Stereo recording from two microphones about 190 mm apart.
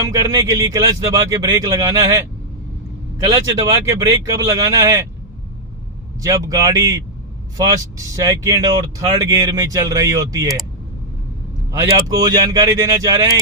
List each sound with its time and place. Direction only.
0.2 s speech: 15° right (ahead or behind)
3.3 s speech: 15° right (ahead or behind)
6.2 s speech: 15° right (ahead or behind)
11.7 s speech: 15° right (ahead or behind)